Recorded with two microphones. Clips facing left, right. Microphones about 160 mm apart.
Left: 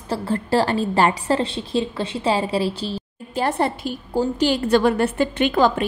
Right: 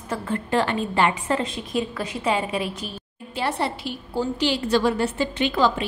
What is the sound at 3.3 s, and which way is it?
A woman's voice, 45° left (ahead or behind).